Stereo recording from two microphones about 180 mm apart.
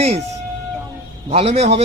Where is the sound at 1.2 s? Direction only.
35° right (ahead or behind).